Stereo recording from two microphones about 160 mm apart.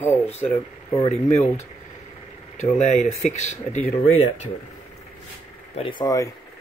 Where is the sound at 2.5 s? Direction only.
45° left (ahead or behind).